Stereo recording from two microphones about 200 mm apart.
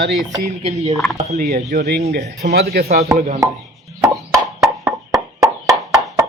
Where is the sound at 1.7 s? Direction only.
55° right (ahead or behind).